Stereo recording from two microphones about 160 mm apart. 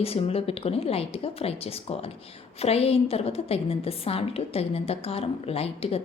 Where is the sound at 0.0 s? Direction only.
40° left (ahead or behind).